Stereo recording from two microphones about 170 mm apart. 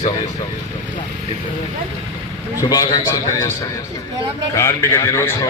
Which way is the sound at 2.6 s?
20° left (ahead or behind).